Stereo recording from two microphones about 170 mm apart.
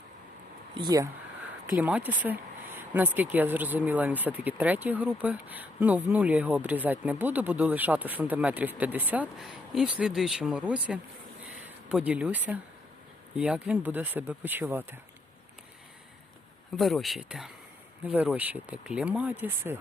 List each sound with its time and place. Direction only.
0.7 s speech: 25° right (ahead or behind)
1.7 s speech: 10° right (ahead or behind)
16.7 s speech: centre (ahead or behind)